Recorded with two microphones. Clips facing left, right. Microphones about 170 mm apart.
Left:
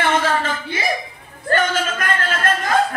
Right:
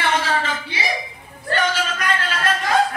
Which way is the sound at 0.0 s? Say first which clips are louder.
Left 3 dB; 50° left (ahead or behind).